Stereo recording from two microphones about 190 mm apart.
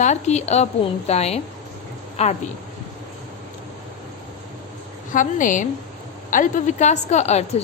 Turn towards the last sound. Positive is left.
turn(degrees=35)  # may be behind; listen again after turning